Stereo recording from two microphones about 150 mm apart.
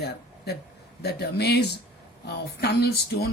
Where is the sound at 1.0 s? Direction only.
90° left.